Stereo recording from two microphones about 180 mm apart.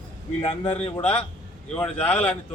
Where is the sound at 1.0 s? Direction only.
10° left (ahead or behind).